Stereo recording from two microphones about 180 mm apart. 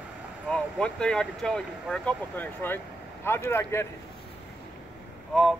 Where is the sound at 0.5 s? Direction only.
5° left (ahead or behind).